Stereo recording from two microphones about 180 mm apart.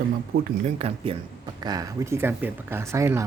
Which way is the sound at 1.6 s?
20° right (ahead or behind).